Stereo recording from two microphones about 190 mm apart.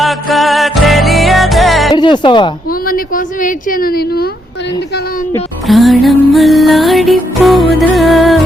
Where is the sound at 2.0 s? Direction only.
25° left (ahead or behind).